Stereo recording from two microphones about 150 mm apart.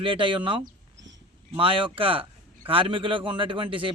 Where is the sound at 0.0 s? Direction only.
35° right (ahead or behind).